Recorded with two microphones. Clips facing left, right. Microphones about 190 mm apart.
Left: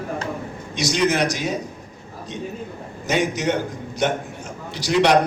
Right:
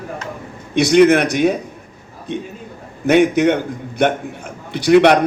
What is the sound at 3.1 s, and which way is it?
A man's voice, 60° right (ahead or behind).